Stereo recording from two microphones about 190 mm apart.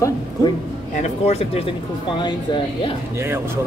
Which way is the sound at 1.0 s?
35° left (ahead or behind).